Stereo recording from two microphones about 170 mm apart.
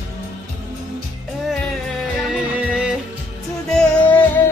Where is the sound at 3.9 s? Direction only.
10° left (ahead or behind).